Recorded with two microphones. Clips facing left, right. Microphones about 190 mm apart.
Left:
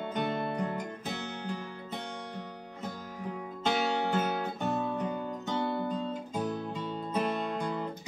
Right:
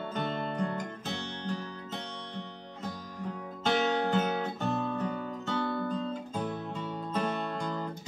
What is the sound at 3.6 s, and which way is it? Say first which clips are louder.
Music: right 2 dB; 10° left (ahead or behind).